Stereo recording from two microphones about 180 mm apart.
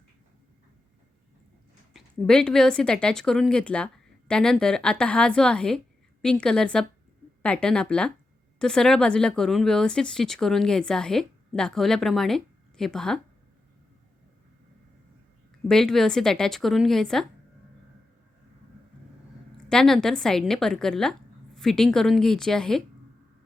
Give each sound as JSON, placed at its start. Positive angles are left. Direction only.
{"t": 1.9, "sound": "speech", "side_deg": 0}
{"t": 15.6, "sound": "speech", "side_deg": 5}
{"t": 19.5, "sound": "speech", "side_deg": 5}